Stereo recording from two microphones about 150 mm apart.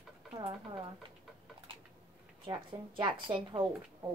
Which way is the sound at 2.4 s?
30° right (ahead or behind).